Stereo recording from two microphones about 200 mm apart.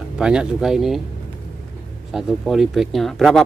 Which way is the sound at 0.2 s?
5° right (ahead or behind).